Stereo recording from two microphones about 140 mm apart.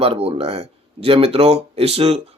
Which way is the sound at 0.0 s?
45° right (ahead or behind).